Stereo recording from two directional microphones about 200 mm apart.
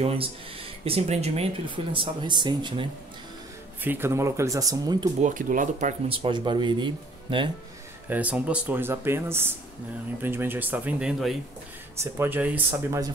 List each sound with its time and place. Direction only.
0.0 s speech: 30° right (ahead or behind)
3.8 s speech: 10° right (ahead or behind)
5.2 s speech: 40° right (ahead or behind); by 7.5 s 25° right (ahead or behind)
8.1 s speech: 5° right (ahead or behind)